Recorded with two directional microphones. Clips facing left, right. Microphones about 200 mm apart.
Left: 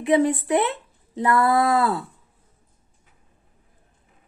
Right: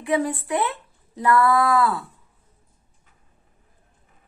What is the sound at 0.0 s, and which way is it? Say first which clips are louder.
Speech: left 4 dB; 20° left (ahead or behind).